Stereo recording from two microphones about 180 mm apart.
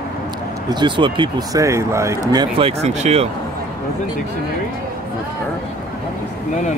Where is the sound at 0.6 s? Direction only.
25° right (ahead or behind).